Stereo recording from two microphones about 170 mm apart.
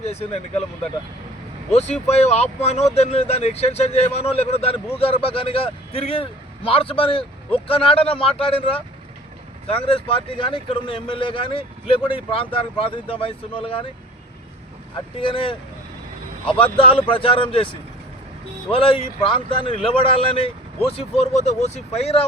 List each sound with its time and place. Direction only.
0.0 s speech: 35° left (ahead or behind)
1.7 s speech: 40° left (ahead or behind)
14.9 s speech: 30° left (ahead or behind)
16.7 s speech: 30° left (ahead or behind)